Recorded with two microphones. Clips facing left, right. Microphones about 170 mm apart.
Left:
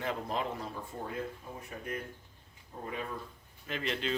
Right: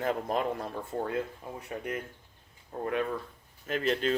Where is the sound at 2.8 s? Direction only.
65° right (ahead or behind).